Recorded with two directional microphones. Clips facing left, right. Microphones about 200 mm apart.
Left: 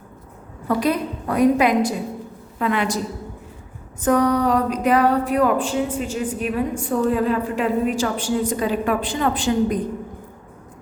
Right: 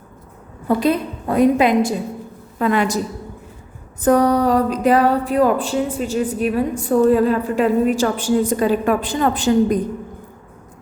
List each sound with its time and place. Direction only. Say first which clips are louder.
0.7 s a woman's voice: right 3 dB; 25° right (ahead or behind)
2.6 s a woman's voice: right 4 dB; 40° right (ahead or behind)
4.0 s a woman's voice: right 3 dB; 35° right (ahead or behind)